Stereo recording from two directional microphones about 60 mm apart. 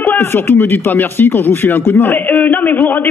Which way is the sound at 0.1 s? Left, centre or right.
Left.